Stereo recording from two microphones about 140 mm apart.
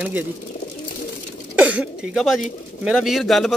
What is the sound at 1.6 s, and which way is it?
Speech, 10° right (ahead or behind).